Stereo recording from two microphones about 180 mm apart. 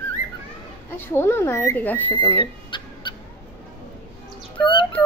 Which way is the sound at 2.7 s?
25° left (ahead or behind).